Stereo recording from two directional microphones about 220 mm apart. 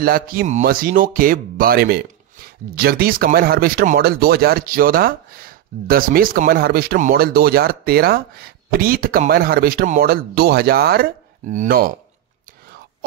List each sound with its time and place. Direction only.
0.0 s speech: 40° right (ahead or behind)